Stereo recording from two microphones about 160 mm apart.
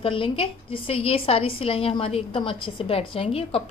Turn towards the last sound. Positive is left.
turn(degrees=35)  # may be behind; listen again after turning